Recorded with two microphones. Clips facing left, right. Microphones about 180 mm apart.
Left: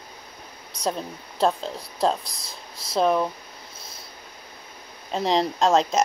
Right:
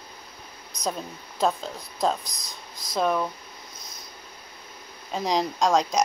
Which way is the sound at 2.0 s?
Centre (ahead or behind).